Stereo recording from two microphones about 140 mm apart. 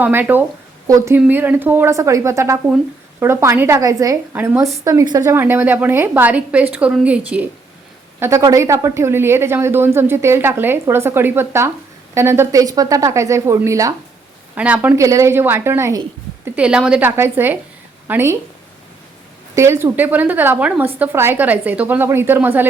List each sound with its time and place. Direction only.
0.0 s a woman's voice: 15° right (ahead or behind)
8.2 s a woman's voice: 20° right (ahead or behind)
14.5 s a woman's voice: 10° right (ahead or behind)
16.6 s a woman's voice: 5° right (ahead or behind)
19.5 s a woman's voice: 20° right (ahead or behind)